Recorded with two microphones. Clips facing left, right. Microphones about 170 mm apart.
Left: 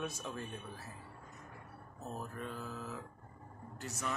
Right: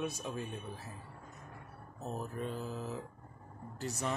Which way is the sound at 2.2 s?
25° right (ahead or behind).